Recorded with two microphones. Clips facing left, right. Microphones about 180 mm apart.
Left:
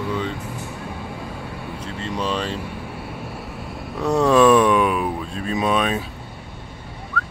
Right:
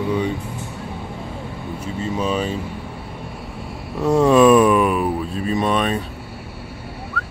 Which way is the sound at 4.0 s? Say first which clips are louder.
Right 2 dB; 5° right (ahead or behind).